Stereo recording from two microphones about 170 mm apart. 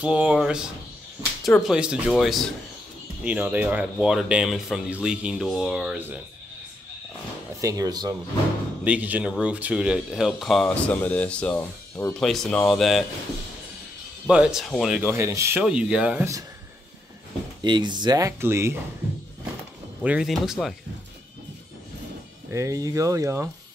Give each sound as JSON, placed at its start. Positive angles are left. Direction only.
{"t": 0.0, "sound": "speech", "side_deg": -5}
{"t": 7.6, "sound": "speech", "side_deg": -20}
{"t": 8.8, "sound": "speech", "side_deg": -10}
{"t": 14.2, "sound": "speech", "side_deg": -5}
{"t": 15.0, "sound": "speech", "side_deg": -15}
{"t": 17.6, "sound": "speech", "side_deg": -25}
{"t": 20.0, "sound": "speech", "side_deg": -5}
{"t": 22.5, "sound": "speech", "side_deg": -15}